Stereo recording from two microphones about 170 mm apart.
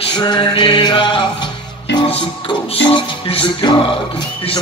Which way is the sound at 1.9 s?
90° left.